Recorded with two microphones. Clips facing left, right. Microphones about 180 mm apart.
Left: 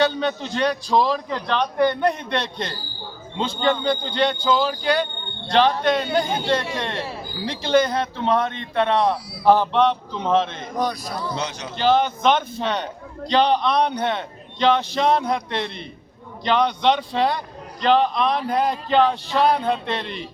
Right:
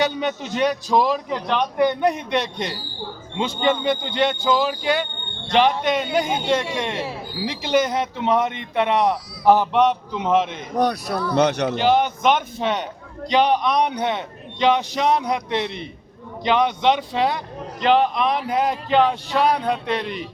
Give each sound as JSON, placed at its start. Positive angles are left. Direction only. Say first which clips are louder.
{"t": 0.0, "sound": "a man's voice", "louder": "left 1 dB", "side_deg": -15}
{"t": 10.8, "sound": "speech", "louder": "right 4 dB", "side_deg": -65}
{"t": 11.8, "sound": "a man's voice", "louder": "left 2 dB", "side_deg": -15}
{"t": 18.4, "sound": "a man's voice", "louder": "even", "side_deg": 0}